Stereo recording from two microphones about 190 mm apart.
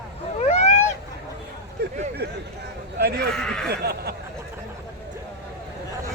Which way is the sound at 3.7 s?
60° right (ahead or behind).